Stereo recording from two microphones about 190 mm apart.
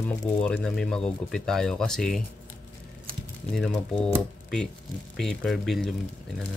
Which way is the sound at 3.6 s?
5° left (ahead or behind).